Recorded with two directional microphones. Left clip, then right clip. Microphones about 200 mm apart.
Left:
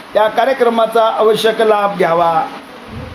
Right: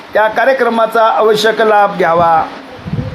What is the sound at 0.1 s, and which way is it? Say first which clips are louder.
Speech: right 2 dB; 15° right (ahead or behind).